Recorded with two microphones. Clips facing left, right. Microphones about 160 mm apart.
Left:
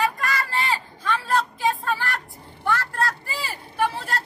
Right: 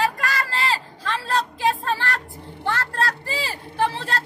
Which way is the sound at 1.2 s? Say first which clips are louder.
Right 2 dB; 80° right.